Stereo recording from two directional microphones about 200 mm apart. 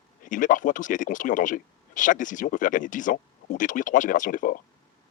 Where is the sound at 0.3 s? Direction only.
40° left (ahead or behind).